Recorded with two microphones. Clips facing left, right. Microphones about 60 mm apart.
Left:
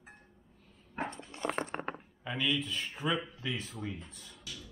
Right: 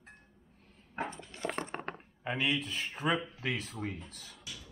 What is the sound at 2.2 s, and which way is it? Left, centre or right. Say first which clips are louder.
Speech: right 1 dB; right.